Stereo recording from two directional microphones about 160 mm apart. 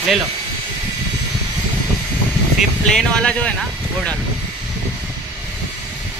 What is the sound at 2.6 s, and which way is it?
Speech, 5° left (ahead or behind).